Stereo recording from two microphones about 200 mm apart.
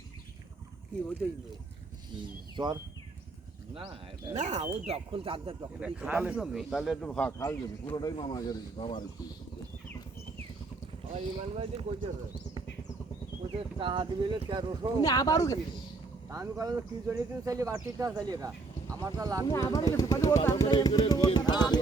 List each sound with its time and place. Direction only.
4.4 s speech: 35° right (ahead or behind)
5.8 s speech: 5° right (ahead or behind); by 7.5 s 10° left (ahead or behind)
7.9 s speech: 20° left (ahead or behind)
11.1 s speech: 30° right (ahead or behind)
13.6 s speech: 25° right (ahead or behind)
15.0 s speech: 20° left (ahead or behind)
16.3 s speech: 15° right (ahead or behind)
19.5 s speech: 15° left (ahead or behind)